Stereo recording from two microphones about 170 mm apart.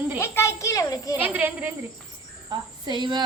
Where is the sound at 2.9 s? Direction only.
25° right (ahead or behind).